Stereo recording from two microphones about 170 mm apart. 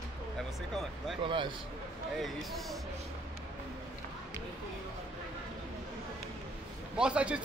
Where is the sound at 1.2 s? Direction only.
30° right (ahead or behind).